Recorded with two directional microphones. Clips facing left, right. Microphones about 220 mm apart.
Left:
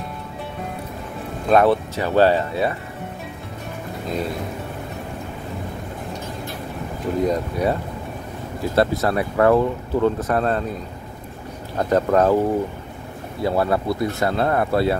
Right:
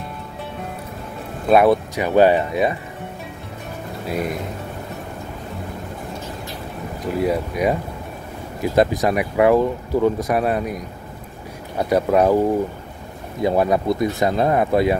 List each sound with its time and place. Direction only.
1.5 s speech: 10° right (ahead or behind)
4.1 s speech: 15° right (ahead or behind)
7.2 s speech: 10° right (ahead or behind)
13.4 s speech: 15° right (ahead or behind)